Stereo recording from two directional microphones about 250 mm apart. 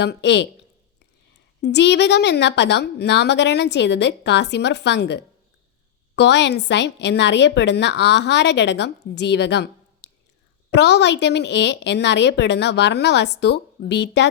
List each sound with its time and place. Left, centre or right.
0.0 s a woman's voice: left
1.6 s a woman's voice: left